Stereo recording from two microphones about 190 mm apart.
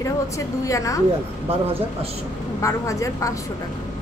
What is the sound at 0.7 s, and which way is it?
Speech, 15° left (ahead or behind).